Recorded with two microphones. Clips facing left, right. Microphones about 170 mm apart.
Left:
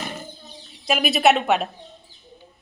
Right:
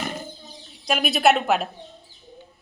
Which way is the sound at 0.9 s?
5° left (ahead or behind).